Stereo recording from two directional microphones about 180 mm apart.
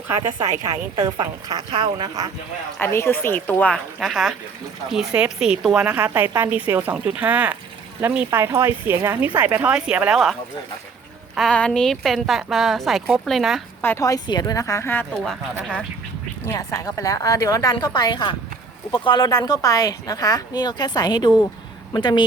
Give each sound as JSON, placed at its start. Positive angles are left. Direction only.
{"t": 0.1, "sound": "a woman's voice", "side_deg": -15}
{"t": 2.7, "sound": "speech", "side_deg": 15}
{"t": 11.3, "sound": "speech", "side_deg": 5}
{"t": 13.8, "sound": "speech", "side_deg": 15}
{"t": 16.5, "sound": "speech", "side_deg": 20}